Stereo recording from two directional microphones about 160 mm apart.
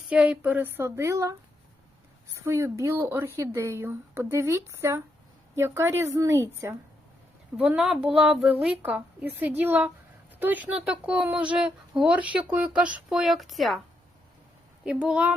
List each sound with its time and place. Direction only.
0.1 s speech: 10° right (ahead or behind)
2.4 s speech: 15° right (ahead or behind); by 13.7 s centre (ahead or behind)
14.8 s speech: 5° right (ahead or behind)